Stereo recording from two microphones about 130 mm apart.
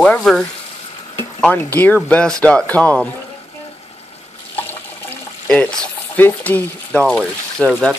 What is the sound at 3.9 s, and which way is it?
Fill, 50° left (ahead or behind).